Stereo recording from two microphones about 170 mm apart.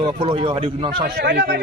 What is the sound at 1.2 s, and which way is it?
Speech, 90° right.